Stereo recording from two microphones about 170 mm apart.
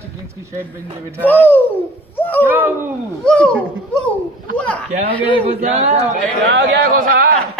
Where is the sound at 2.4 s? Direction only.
10° right (ahead or behind).